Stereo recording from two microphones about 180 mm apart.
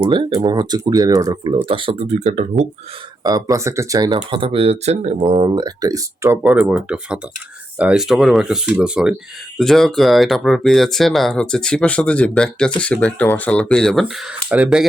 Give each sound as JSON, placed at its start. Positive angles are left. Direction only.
{"t": 0.0, "sound": "speech", "side_deg": -25}
{"t": 3.2, "sound": "speech", "side_deg": -20}
{"t": 6.4, "sound": "speech", "side_deg": -5}